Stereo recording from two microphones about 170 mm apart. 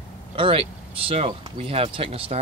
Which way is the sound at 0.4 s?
35° right (ahead or behind).